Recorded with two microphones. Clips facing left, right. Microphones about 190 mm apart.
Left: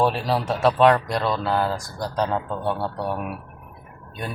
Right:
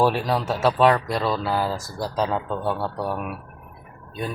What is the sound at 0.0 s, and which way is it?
Speech, centre (ahead or behind).